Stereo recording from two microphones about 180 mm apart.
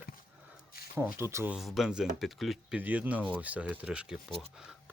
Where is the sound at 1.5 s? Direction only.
Centre (ahead or behind).